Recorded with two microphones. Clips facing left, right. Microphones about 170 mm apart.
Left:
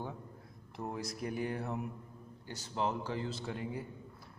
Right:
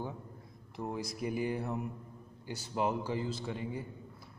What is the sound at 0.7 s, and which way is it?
Speech, centre (ahead or behind).